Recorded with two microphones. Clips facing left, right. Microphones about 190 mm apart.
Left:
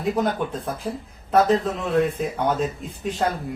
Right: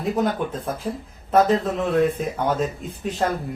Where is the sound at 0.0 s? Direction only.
Centre (ahead or behind).